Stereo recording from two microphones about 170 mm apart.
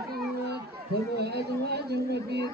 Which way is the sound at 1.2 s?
70° right (ahead or behind).